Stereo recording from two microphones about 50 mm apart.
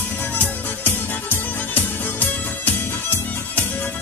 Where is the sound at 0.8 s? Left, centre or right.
Left.